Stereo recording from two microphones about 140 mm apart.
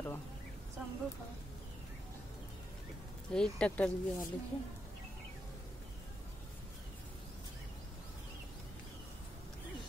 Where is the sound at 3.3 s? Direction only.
5° left (ahead or behind).